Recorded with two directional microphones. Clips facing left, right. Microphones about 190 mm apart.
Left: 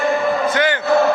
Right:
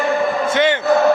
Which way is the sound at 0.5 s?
25° right (ahead or behind).